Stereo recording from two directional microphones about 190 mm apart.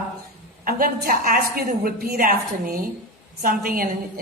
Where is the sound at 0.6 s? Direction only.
50° right (ahead or behind).